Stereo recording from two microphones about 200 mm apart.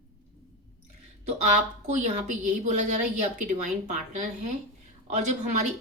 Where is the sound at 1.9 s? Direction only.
40° right (ahead or behind).